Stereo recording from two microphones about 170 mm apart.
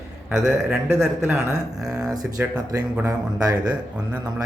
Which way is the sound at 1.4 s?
5° right (ahead or behind).